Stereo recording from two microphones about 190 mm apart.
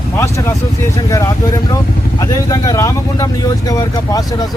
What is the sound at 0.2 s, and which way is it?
Speech, 15° left (ahead or behind).